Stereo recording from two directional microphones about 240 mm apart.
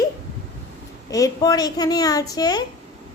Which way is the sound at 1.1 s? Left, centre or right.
Centre.